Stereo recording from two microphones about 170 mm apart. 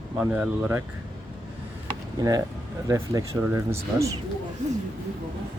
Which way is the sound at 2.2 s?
20° right (ahead or behind).